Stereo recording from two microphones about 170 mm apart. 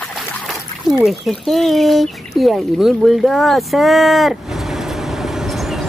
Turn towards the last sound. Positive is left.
turn(degrees=0)  # may be behind; listen again after turning